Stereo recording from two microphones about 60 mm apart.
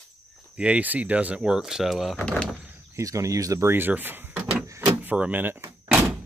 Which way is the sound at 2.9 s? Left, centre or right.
Right.